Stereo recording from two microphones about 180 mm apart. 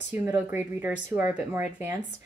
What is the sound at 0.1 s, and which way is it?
A woman's voice, 10° right (ahead or behind).